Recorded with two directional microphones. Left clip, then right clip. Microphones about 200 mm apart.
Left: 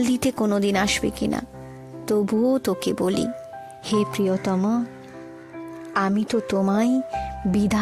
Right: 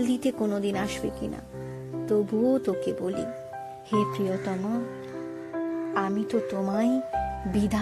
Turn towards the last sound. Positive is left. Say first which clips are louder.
# left 4 dB
turn(degrees=50)  # may be behind; listen again after turning